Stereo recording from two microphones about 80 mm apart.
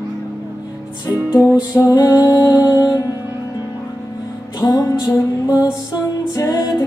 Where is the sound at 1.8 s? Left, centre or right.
Left.